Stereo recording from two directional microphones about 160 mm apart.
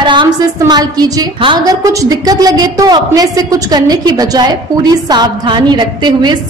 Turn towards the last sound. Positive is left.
turn(degrees=-30)  # may be behind; listen again after turning